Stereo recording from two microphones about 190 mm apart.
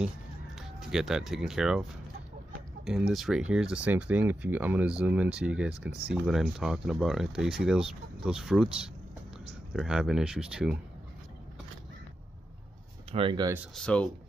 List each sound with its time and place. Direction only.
0.6 s speech: centre (ahead or behind)
9.8 s speech: 5° right (ahead or behind)
13.1 s speech: 25° right (ahead or behind)
13.7 s speech: 5° left (ahead or behind)